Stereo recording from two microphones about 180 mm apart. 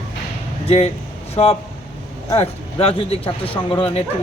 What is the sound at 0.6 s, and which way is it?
Speech, 35° left (ahead or behind).